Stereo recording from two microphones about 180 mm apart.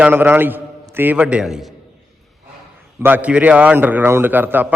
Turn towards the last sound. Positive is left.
turn(degrees=-10)  # may be behind; listen again after turning